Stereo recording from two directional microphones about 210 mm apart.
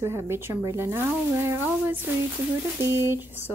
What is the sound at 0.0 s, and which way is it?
A woman's voice, 10° right (ahead or behind).